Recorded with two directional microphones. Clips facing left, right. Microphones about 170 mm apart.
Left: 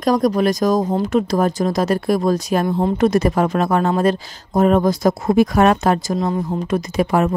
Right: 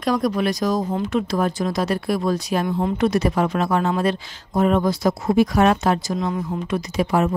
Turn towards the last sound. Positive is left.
turn(degrees=55)  # may be behind; listen again after turning